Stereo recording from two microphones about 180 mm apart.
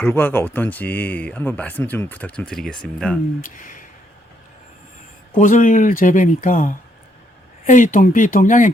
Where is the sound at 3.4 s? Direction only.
50° left (ahead or behind).